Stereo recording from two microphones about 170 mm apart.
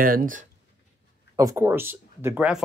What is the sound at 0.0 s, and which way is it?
Speech, 55° right (ahead or behind).